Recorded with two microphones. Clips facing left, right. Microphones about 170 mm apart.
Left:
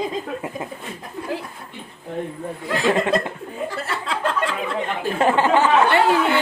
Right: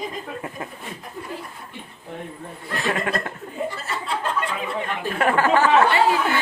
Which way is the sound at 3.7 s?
75° left (ahead or behind).